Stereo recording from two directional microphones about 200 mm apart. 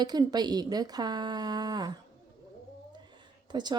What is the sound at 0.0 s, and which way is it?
Speech, 20° right (ahead or behind).